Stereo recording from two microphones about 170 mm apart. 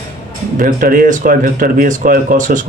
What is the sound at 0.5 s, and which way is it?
Speech, 55° right (ahead or behind).